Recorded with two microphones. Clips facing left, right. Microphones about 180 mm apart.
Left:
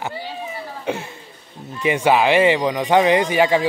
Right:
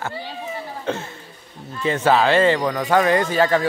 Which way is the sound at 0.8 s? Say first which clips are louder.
Left 2 dB; 15° left (ahead or behind).